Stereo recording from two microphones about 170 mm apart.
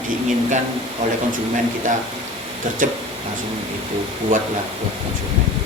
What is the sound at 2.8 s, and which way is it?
Speech, 50° right (ahead or behind).